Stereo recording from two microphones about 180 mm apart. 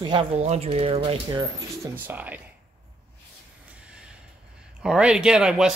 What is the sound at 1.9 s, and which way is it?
Speech, 10° right (ahead or behind).